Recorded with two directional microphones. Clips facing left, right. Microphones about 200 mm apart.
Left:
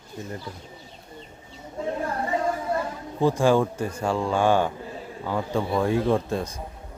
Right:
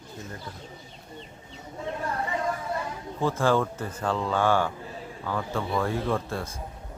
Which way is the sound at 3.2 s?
15° left (ahead or behind).